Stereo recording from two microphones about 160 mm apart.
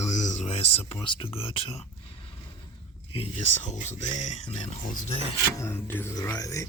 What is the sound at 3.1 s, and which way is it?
Speech, 40° left (ahead or behind).